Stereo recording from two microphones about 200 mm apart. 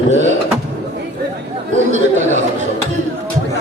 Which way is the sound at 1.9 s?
35° right (ahead or behind).